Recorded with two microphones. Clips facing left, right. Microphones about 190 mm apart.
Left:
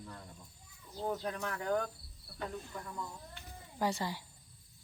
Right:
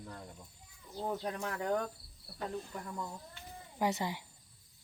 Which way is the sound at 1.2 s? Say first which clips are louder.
Right 1 dB; 30° right (ahead or behind).